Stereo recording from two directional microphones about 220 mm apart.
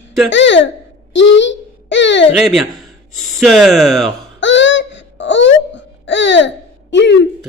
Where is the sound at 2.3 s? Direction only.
Centre (ahead or behind).